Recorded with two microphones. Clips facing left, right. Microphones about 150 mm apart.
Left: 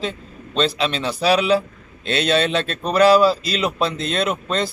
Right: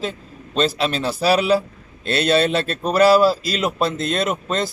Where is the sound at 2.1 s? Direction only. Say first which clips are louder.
Right 2 dB; 5° right (ahead or behind).